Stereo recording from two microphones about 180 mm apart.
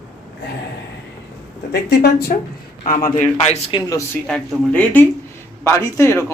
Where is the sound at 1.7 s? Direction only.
65° left (ahead or behind).